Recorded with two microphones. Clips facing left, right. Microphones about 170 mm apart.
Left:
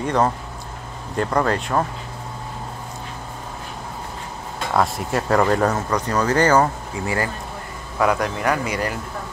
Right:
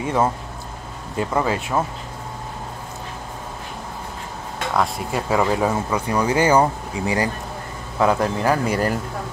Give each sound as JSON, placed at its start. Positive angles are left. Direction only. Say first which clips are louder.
{"t": 0.0, "sound": "speech", "louder": "left 1 dB", "side_deg": -5}
{"t": 4.7, "sound": "speech", "louder": "left 2 dB", "side_deg": 0}
{"t": 8.0, "sound": "a man's voice", "louder": "right 1 dB", "side_deg": -25}
{"t": 8.6, "sound": "speech", "louder": "right 4 dB", "side_deg": -45}